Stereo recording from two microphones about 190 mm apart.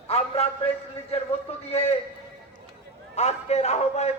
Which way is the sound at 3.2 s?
35° left (ahead or behind).